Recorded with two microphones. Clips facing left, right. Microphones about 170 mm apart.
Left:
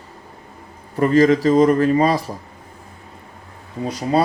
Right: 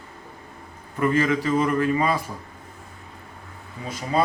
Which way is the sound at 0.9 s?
35° left (ahead or behind).